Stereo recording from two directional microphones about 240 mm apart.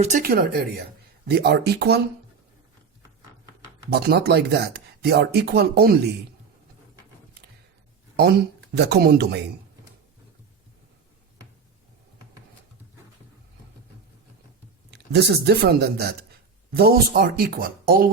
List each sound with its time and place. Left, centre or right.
0.0 s speech: right
3.8 s speech: right
8.1 s speech: right
14.8 s speech: right